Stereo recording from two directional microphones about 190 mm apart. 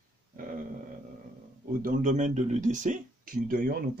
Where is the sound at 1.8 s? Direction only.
45° right (ahead or behind).